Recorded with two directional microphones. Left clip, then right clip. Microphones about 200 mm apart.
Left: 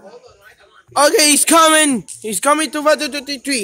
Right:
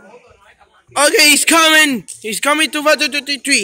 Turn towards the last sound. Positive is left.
turn(degrees=-5)  # may be behind; listen again after turning